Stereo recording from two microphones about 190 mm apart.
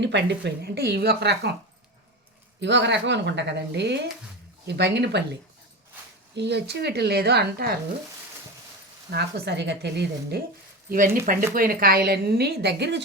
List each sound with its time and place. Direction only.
0.0 s a woman's voice: 70° right (ahead or behind)
2.6 s a woman's voice: 65° right (ahead or behind)
9.0 s a woman's voice: 55° right (ahead or behind)
10.8 s a woman's voice: 50° right (ahead or behind)